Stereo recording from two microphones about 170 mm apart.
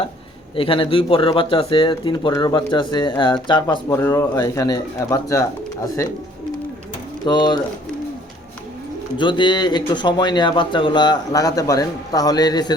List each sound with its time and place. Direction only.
0.5 s speech: 30° left (ahead or behind)
3.9 s speech: 15° left (ahead or behind)
7.3 s speech: 25° left (ahead or behind)
9.1 s speech: 30° left (ahead or behind)